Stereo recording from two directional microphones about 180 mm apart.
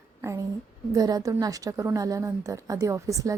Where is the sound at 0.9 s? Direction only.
20° right (ahead or behind).